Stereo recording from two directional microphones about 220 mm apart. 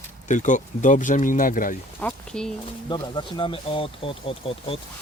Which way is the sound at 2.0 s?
5° left (ahead or behind).